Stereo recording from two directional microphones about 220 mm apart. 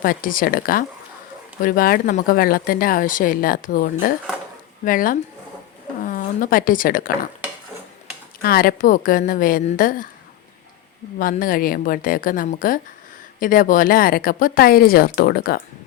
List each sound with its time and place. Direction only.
0.0 s speech: 40° left (ahead or behind)
4.9 s speech: 40° left (ahead or behind)
8.4 s speech: 40° left (ahead or behind)
11.2 s speech: 40° left (ahead or behind)